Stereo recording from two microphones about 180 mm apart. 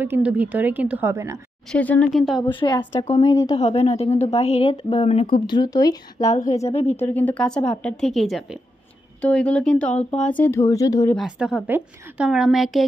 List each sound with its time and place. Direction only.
0.0 s a woman's voice: 10° right (ahead or behind)
1.7 s a woman's voice: 5° left (ahead or behind)
2.4 s speech: 25° left (ahead or behind)
3.5 s a woman's voice: 35° left (ahead or behind); by 6.3 s 20° left (ahead or behind)
6.3 s a woman's voice: 40° left (ahead or behind)
7.0 s a woman's voice: 10° left (ahead or behind)
11.1 s a woman's voice: 5° right (ahead or behind)